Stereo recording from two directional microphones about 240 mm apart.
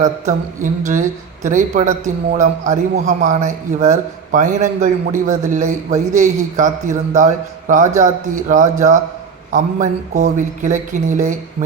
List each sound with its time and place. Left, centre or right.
0.0 s a man's voice: right